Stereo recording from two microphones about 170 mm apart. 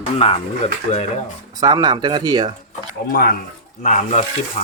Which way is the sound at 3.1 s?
60° left (ahead or behind).